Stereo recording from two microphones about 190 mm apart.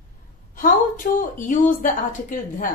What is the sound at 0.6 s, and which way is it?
A woman's voice, 45° left (ahead or behind).